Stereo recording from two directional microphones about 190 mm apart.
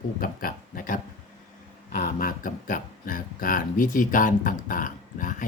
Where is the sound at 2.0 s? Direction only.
45° left (ahead or behind).